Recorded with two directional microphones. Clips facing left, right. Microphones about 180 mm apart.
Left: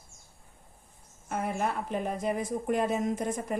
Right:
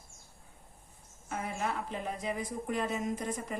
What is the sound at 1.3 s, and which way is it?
Speech, 55° left (ahead or behind).